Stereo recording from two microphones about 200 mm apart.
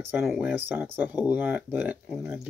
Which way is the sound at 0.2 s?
5° right (ahead or behind).